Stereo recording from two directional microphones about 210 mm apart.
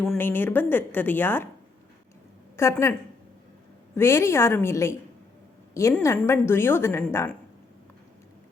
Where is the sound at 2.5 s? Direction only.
15° left (ahead or behind).